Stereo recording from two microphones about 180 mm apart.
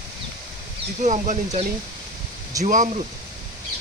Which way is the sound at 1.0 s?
40° right (ahead or behind).